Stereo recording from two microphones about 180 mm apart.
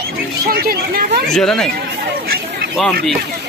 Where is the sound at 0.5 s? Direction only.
55° right (ahead or behind).